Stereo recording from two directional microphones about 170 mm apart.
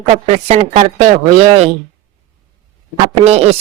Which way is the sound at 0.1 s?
35° right (ahead or behind).